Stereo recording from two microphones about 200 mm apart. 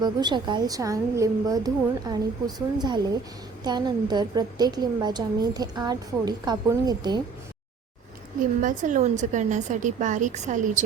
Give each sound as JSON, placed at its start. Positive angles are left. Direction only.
{"t": 0.0, "sound": "a woman's voice", "side_deg": -20}
{"t": 8.6, "sound": "a woman's voice", "side_deg": -40}